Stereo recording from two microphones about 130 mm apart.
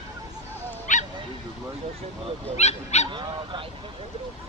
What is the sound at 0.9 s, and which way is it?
Dog, 75° left (ahead or behind).